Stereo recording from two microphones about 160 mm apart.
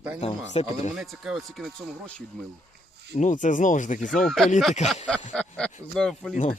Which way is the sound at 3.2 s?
50° left (ahead or behind).